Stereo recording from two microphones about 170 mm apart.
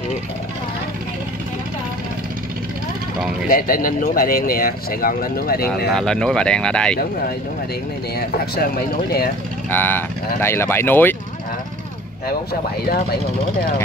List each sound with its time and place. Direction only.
3.4 s speech: 55° left (ahead or behind)
5.9 s speech: 5° left (ahead or behind)
8.2 s speech: 65° left (ahead or behind)
9.7 s speech: 10° left (ahead or behind)